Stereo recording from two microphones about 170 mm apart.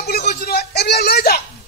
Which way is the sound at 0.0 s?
70° left (ahead or behind).